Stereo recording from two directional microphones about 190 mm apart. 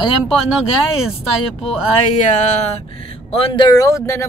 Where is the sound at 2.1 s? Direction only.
40° left (ahead or behind).